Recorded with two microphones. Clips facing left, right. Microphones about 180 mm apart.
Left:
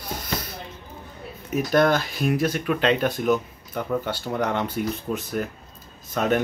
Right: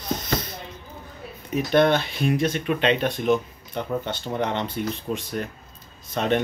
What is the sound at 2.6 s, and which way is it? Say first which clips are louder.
Speech: left 1 dB; 25° right (ahead or behind).